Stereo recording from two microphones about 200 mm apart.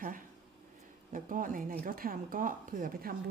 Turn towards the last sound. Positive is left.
turn(degrees=-45)  # may be behind; listen again after turning